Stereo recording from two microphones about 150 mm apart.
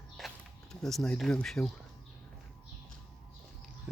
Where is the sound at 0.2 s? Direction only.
Centre (ahead or behind).